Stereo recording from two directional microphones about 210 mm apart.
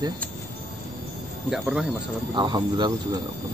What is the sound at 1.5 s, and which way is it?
Speech, centre (ahead or behind).